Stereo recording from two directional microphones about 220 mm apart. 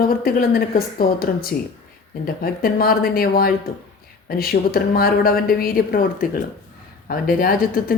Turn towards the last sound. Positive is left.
turn(degrees=40)  # may be behind; listen again after turning